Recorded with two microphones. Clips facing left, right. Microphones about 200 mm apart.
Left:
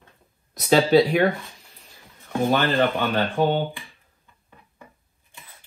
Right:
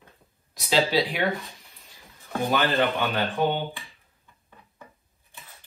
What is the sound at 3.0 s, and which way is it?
Speech, 30° left (ahead or behind).